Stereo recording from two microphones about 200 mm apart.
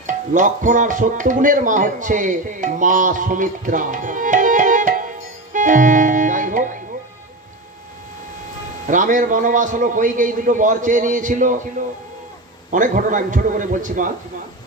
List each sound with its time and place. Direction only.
0.1 s speech: 40° right (ahead or behind)
5.5 s music: 40° right (ahead or behind)
8.9 s speech: 40° right (ahead or behind)
12.7 s speech: 40° right (ahead or behind)